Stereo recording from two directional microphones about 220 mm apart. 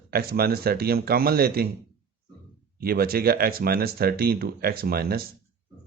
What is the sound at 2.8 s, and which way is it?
Speech, 45° right (ahead or behind).